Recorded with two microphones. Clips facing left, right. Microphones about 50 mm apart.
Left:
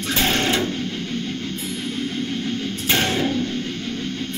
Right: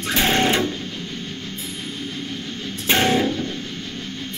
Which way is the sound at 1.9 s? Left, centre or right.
Left.